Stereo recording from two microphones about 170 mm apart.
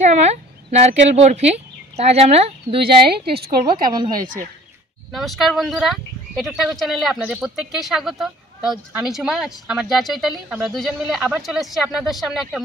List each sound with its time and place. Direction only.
0.0 s speech: 40° right (ahead or behind)
3.9 s speech: 25° right (ahead or behind)
4.2 s speech: 50° right (ahead or behind)
5.1 s speech: centre (ahead or behind)